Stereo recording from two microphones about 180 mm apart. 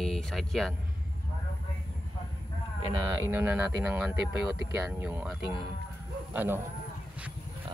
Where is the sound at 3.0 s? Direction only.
15° right (ahead or behind).